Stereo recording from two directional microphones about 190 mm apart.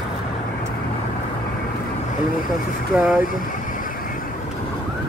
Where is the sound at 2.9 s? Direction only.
5° right (ahead or behind).